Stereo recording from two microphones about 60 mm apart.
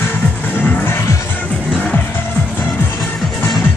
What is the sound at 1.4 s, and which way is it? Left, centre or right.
Music, left.